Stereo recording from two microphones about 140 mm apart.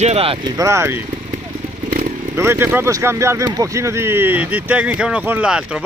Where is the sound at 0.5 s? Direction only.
20° right (ahead or behind).